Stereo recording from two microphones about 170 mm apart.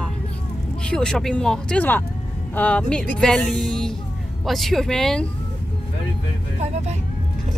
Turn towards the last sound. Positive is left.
turn(degrees=-40)  # may be behind; listen again after turning